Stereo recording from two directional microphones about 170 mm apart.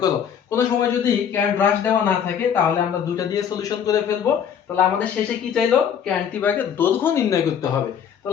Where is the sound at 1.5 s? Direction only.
10° left (ahead or behind).